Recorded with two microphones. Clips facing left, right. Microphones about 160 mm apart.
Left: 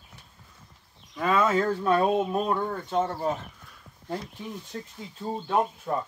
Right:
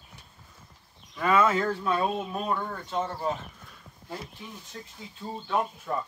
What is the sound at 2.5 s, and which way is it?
Speech, 15° left (ahead or behind).